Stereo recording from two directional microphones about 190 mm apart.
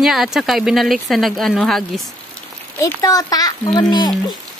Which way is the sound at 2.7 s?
20° left (ahead or behind).